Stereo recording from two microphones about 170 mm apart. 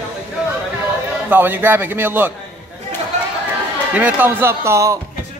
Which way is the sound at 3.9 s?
10° right (ahead or behind).